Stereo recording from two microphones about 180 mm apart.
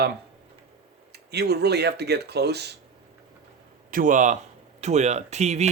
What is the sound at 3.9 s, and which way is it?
A man's voice, 50° right (ahead or behind).